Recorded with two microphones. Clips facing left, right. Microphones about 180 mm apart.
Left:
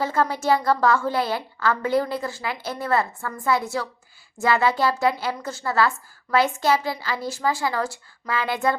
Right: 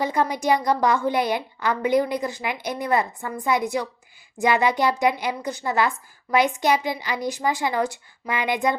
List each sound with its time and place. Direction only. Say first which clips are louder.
0.0 s a woman's voice: even; 15° right (ahead or behind)